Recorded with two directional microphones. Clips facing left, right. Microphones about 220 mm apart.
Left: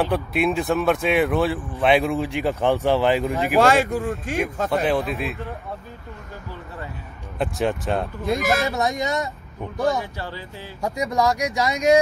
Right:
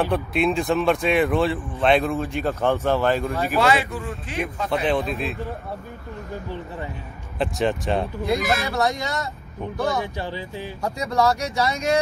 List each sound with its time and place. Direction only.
0.1 s speech: 5° left (ahead or behind)
3.6 s speech: 45° left (ahead or behind)
4.8 s speech: 5° left (ahead or behind)
7.3 s speech: 5° left (ahead or behind)
8.4 s speech: 45° left (ahead or behind)
8.6 s speech: 15° left (ahead or behind)
10.1 s speech: 15° right (ahead or behind)
10.8 s speech: 15° left (ahead or behind)